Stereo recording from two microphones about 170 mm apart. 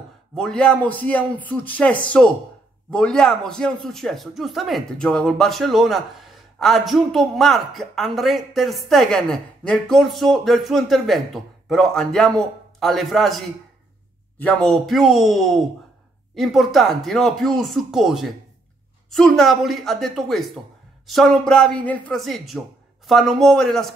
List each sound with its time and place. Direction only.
0.4 s a man's voice: 5° left (ahead or behind)
14.4 s speech: 5° left (ahead or behind)